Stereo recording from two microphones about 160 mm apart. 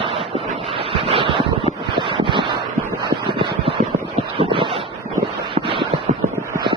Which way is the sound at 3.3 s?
35° right (ahead or behind).